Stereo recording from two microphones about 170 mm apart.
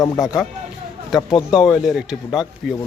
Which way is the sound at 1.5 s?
Centre (ahead or behind).